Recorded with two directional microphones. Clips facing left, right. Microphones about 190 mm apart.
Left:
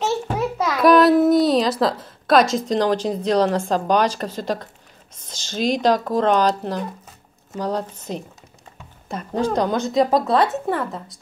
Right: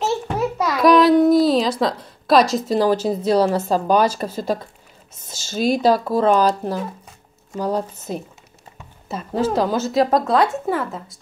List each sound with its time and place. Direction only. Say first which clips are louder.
0.0 s a child's voice: right 1 dB; centre (ahead or behind)